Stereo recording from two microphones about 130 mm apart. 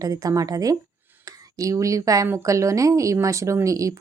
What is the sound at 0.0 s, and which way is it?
A woman's voice, 25° right (ahead or behind).